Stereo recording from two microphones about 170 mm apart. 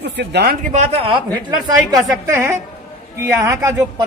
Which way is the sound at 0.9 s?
35° right (ahead or behind).